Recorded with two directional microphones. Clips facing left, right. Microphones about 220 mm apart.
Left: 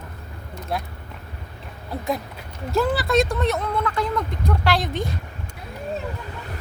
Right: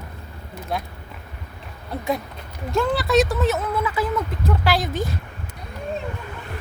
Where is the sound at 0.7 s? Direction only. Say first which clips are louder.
Even; centre (ahead or behind).